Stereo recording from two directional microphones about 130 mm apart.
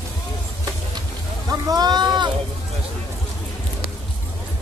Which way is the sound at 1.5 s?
30° right (ahead or behind).